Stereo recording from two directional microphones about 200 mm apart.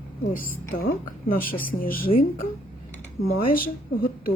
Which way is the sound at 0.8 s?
45° left (ahead or behind).